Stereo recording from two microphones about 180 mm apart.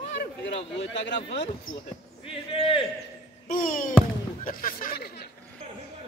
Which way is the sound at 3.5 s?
50° left (ahead or behind).